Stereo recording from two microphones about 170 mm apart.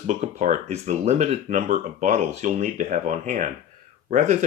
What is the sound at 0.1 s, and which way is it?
Speech, 50° right (ahead or behind).